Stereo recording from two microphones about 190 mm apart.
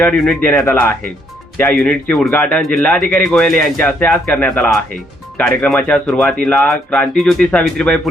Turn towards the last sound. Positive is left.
turn(degrees=5)  # may be behind; listen again after turning